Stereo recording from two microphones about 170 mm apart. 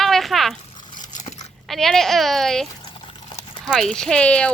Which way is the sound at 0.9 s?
45° left (ahead or behind).